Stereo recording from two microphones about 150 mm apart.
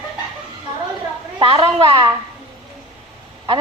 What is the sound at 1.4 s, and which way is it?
Speech, 35° right (ahead or behind).